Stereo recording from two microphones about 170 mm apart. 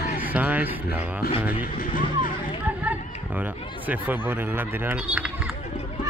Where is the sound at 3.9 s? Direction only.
10° right (ahead or behind).